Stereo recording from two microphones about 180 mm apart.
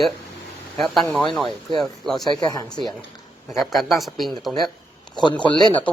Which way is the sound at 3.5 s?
Centre (ahead or behind).